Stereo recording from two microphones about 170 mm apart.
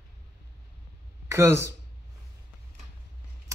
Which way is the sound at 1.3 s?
15° right (ahead or behind).